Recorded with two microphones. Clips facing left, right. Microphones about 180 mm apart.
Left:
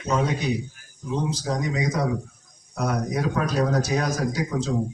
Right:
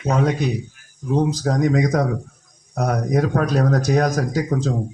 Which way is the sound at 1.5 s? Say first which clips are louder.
Right 8 dB; 50° right (ahead or behind).